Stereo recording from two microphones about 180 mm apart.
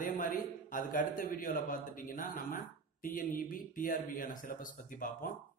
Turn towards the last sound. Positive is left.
turn(degrees=50)  # may be behind; listen again after turning